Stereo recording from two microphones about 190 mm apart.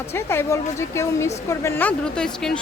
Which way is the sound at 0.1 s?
15° left (ahead or behind).